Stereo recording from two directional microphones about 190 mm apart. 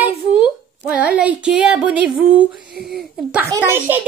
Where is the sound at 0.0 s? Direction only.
5° right (ahead or behind).